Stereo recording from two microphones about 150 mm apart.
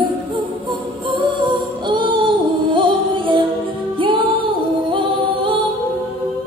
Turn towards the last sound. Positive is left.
turn(degrees=-35)  # may be behind; listen again after turning